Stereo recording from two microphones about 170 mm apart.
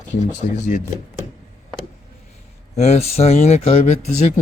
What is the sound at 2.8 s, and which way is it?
Speech, 40° left (ahead or behind).